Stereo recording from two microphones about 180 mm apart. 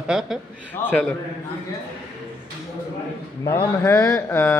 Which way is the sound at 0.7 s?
10° left (ahead or behind).